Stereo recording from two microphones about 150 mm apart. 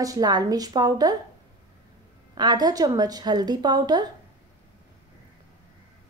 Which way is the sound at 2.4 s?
25° right (ahead or behind).